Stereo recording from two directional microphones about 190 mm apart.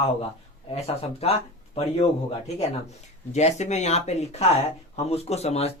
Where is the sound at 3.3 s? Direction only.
35° left (ahead or behind).